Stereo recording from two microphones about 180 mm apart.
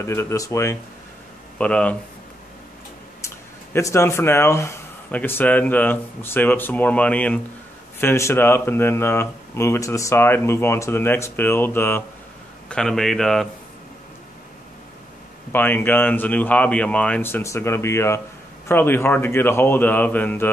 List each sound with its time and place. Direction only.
0.0 s speech: 15° left (ahead or behind)
3.2 s speech: 15° left (ahead or behind)
15.5 s speech: 10° left (ahead or behind)